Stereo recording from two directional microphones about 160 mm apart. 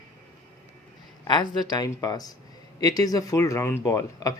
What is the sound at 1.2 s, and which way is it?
Speech, 25° left (ahead or behind).